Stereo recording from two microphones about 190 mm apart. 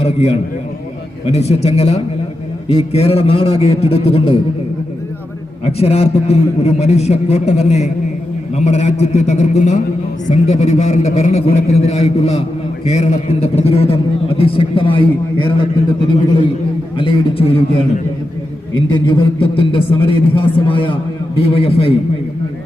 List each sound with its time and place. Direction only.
0.0 s a man's voice: 35° left (ahead or behind)
5.6 s a man's voice: 35° left (ahead or behind)